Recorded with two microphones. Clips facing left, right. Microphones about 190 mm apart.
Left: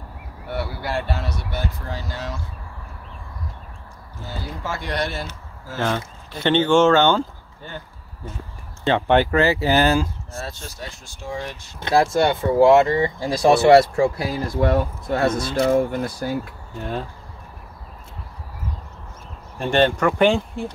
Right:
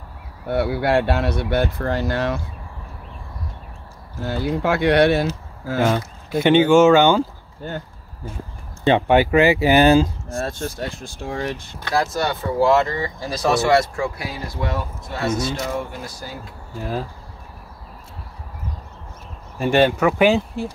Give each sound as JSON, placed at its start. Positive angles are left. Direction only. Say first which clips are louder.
{"t": 0.5, "sound": "speech", "louder": "right 8 dB", "side_deg": -60}
{"t": 4.2, "sound": "speech", "louder": "right 10 dB", "side_deg": -65}
{"t": 5.8, "sound": "speech", "louder": "right 4 dB", "side_deg": -10}
{"t": 8.8, "sound": "speech", "louder": "right 2 dB", "side_deg": -15}
{"t": 10.3, "sound": "speech", "louder": "right 7 dB", "side_deg": -50}
{"t": 11.8, "sound": "speech", "louder": "left 4 dB", "side_deg": 25}
{"t": 14.5, "sound": "speech", "louder": "left 8 dB", "side_deg": 55}
{"t": 16.7, "sound": "speech", "louder": "right 1 dB", "side_deg": 0}
{"t": 19.6, "sound": "speech", "louder": "right 2 dB", "side_deg": -5}